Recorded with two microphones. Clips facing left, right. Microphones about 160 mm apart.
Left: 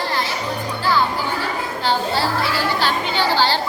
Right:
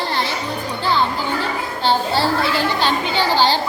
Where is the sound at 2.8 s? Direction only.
15° right (ahead or behind).